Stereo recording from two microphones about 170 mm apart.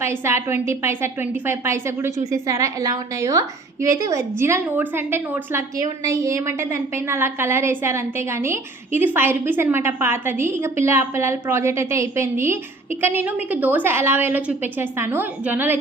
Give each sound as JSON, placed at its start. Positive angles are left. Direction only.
{"t": 0.0, "sound": "a woman's voice", "side_deg": -15}